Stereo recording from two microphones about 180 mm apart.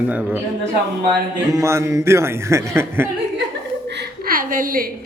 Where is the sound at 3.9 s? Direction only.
55° right (ahead or behind).